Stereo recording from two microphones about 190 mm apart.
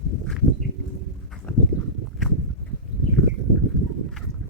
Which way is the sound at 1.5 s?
10° left (ahead or behind).